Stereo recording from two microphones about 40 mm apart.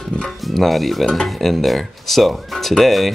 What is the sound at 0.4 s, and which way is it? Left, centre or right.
Speech, centre.